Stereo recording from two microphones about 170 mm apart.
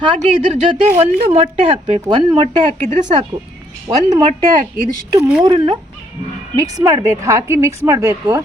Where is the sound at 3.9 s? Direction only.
25° right (ahead or behind).